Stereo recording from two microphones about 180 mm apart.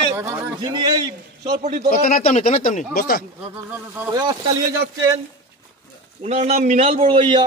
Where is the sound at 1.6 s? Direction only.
40° right (ahead or behind).